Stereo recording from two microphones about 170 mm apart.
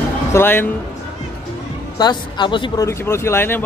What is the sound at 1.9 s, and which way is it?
Speech, 25° left (ahead or behind).